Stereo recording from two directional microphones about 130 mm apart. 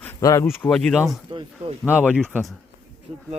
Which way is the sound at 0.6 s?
5° left (ahead or behind).